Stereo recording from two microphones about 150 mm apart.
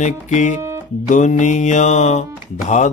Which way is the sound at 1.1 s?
55° left (ahead or behind).